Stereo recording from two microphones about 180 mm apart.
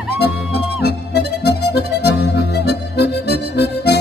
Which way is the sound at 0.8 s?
65° left (ahead or behind).